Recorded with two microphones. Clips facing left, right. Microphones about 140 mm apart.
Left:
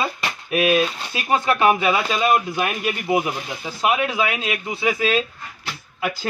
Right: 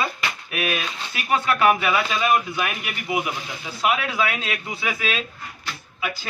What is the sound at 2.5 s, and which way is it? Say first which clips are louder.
Speech: left 4 dB; 40° left (ahead or behind).